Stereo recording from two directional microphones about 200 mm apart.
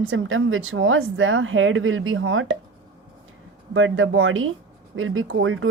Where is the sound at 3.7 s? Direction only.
75° right (ahead or behind).